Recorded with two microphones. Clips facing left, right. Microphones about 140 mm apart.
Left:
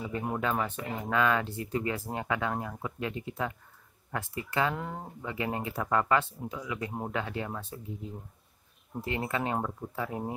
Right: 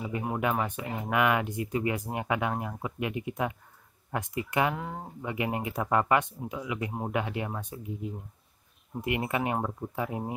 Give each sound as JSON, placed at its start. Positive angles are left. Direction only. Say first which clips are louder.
{"t": 0.0, "sound": "speech", "louder": "right 2 dB", "side_deg": -10}
{"t": 4.7, "sound": "speech", "louder": "even", "side_deg": -5}
{"t": 5.2, "sound": "speech", "louder": "right 2 dB", "side_deg": -15}